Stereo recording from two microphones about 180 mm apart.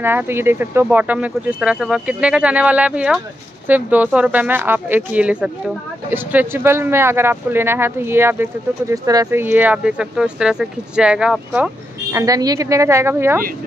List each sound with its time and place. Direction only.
0.0 s speech: 10° right (ahead or behind)
12.1 s speech: 20° right (ahead or behind)